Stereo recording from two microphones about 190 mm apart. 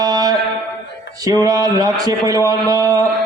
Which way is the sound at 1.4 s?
20° right (ahead or behind).